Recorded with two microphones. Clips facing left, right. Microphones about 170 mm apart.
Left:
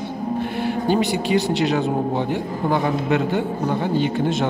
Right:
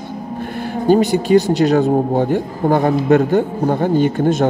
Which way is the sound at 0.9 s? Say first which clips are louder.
Right 9 dB; 45° right (ahead or behind).